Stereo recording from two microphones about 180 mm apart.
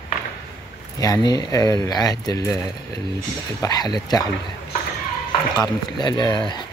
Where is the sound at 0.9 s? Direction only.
20° left (ahead or behind).